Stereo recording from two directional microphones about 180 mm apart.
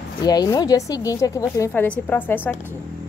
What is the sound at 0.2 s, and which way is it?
A woman's voice, 20° left (ahead or behind).